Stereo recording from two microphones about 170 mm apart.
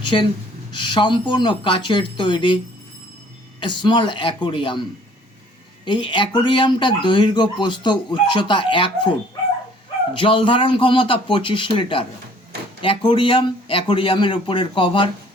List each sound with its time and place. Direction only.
0.0 s speech: 25° left (ahead or behind)
3.6 s speech: 25° left (ahead or behind)
10.2 s a man's voice: 30° left (ahead or behind)